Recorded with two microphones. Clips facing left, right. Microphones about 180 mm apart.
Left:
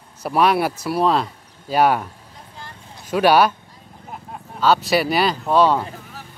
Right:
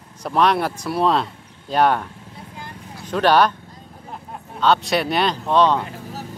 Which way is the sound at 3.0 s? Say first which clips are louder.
Left 1 dB; 10° left (ahead or behind).